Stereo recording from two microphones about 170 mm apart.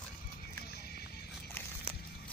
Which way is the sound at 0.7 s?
70° left (ahead or behind).